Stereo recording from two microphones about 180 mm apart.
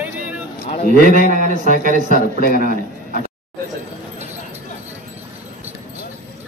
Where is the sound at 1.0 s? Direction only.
45° right (ahead or behind).